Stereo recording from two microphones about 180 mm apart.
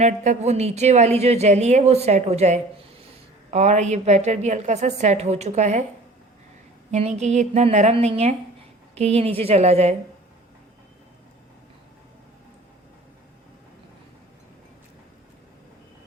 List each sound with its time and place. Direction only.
0.0 s a woman's voice: 40° right (ahead or behind)
6.9 s a woman's voice: 40° right (ahead or behind)